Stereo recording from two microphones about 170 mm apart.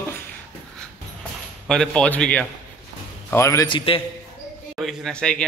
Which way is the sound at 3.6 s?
30° left (ahead or behind).